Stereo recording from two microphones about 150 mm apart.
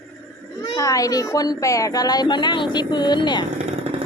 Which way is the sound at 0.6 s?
25° left (ahead or behind).